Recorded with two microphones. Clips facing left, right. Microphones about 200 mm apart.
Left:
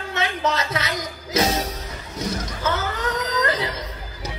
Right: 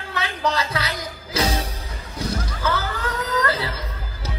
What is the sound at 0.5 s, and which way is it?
Music, 25° left (ahead or behind).